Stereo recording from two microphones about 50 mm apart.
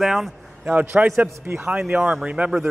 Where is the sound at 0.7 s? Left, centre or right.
Right.